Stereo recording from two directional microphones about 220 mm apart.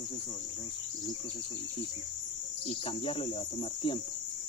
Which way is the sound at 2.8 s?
25° left (ahead or behind).